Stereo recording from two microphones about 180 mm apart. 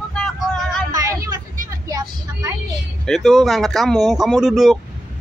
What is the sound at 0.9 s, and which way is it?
Vehicle, 20° right (ahead or behind).